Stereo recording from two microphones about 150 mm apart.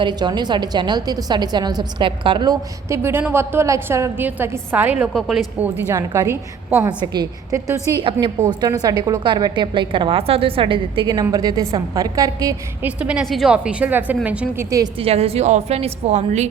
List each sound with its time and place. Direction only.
0.0 s a woman's voice: 30° right (ahead or behind); by 5.0 s 10° right (ahead or behind)
5.1 s a woman's voice: centre (ahead or behind)
5.5 s a woman's voice: 10° right (ahead or behind)
7.0 s a woman's voice: 30° right (ahead or behind)
13.0 s a woman's voice: 5° right (ahead or behind)
14.9 s a woman's voice: 40° right (ahead or behind)